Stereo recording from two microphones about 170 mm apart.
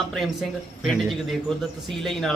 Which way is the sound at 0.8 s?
Centre (ahead or behind).